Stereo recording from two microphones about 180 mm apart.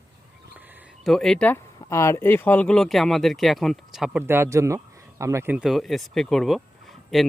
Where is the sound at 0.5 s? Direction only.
10° right (ahead or behind).